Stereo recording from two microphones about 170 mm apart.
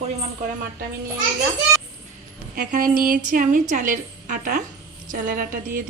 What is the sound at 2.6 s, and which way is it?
A woman's voice, 50° right (ahead or behind).